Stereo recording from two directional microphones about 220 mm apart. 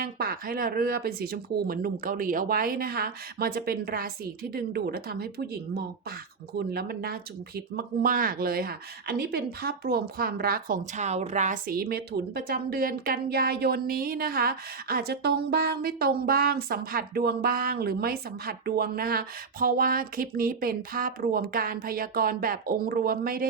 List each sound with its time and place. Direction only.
0.0 s speech: 45° right (ahead or behind)